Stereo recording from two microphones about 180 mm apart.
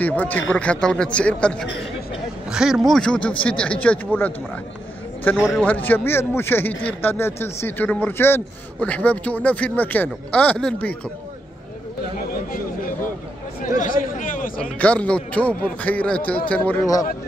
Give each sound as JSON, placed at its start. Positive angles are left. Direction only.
{"t": 0.0, "sound": "a man's voice", "side_deg": 10}
{"t": 12.2, "sound": "a sound", "side_deg": 50}
{"t": 13.8, "sound": "chatter", "side_deg": 45}
{"t": 14.6, "sound": "speech", "side_deg": 5}